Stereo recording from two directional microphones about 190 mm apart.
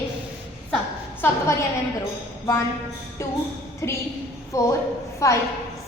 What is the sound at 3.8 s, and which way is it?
A woman's voice, 15° left (ahead or behind).